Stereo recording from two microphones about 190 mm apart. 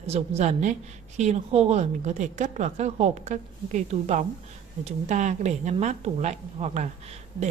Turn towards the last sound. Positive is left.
turn(degrees=-35)  # may be behind; listen again after turning